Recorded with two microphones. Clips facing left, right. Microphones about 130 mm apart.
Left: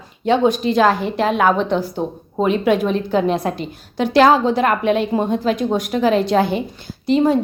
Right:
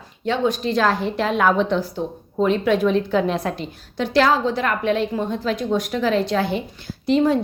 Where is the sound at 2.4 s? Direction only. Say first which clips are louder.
Left 2 dB; 10° left (ahead or behind).